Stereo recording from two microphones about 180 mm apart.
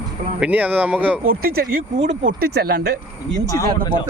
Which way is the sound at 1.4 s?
55° right (ahead or behind).